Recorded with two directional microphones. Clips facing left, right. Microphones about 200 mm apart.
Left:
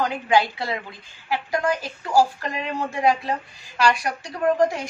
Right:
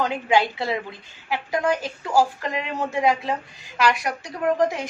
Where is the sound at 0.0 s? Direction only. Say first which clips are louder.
Even; 20° right (ahead or behind).